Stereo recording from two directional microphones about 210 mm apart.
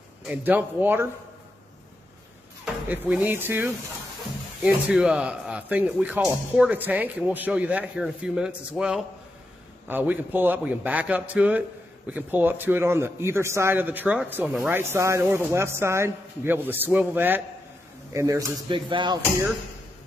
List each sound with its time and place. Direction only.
0.3 s a man's voice: 10° right (ahead or behind)
2.6 s a man's voice: 5° right (ahead or behind); by 19.1 s 25° right (ahead or behind)